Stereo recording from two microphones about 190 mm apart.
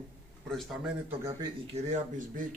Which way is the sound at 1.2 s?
15° right (ahead or behind).